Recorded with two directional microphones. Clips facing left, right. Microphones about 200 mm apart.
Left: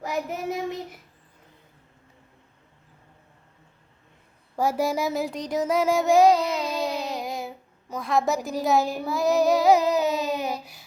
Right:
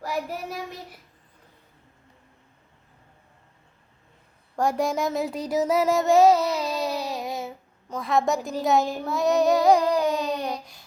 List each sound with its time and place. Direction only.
0.0 s child singing: 20° left (ahead or behind)
4.5 s child singing: 5° left (ahead or behind)